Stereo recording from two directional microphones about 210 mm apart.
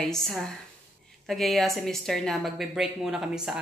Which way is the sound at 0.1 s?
Centre (ahead or behind).